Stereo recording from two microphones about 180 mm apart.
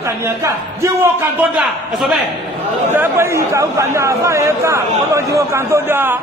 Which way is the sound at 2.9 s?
10° right (ahead or behind).